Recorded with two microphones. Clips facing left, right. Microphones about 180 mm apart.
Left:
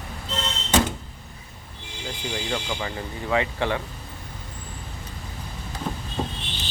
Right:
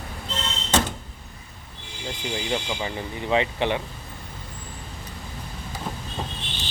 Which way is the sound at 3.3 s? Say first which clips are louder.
Right 1 dB; 20° right (ahead or behind).